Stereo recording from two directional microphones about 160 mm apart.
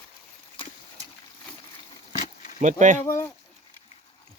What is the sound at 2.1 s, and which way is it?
Insect, 45° left (ahead or behind).